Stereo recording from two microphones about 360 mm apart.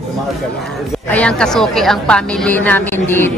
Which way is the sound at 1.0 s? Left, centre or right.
Centre.